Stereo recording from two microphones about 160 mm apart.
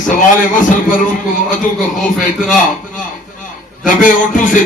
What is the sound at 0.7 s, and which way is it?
Speech, 55° left (ahead or behind).